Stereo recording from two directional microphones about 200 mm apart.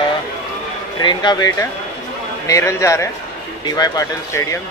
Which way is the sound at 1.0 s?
20° left (ahead or behind).